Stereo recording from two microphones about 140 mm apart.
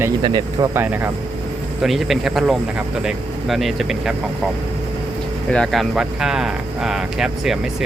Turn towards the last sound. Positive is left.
turn(degrees=-5)  # may be behind; listen again after turning